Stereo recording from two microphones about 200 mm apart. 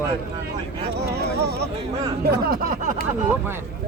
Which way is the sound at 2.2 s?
50° right (ahead or behind).